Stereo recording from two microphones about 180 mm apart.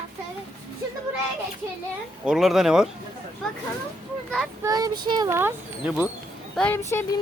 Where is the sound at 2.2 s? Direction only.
Centre (ahead or behind).